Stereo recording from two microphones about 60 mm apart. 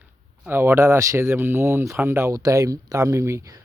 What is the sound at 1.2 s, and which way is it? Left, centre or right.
Speech, right.